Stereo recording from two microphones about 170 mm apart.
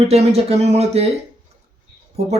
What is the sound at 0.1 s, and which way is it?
Speech, 40° right (ahead or behind).